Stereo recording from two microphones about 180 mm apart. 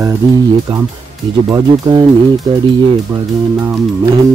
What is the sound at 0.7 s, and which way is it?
Speech, 30° right (ahead or behind).